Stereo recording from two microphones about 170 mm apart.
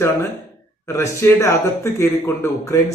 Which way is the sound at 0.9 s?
15° left (ahead or behind).